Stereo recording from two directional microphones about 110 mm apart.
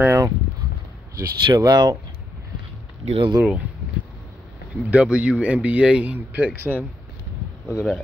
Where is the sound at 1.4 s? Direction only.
40° right (ahead or behind).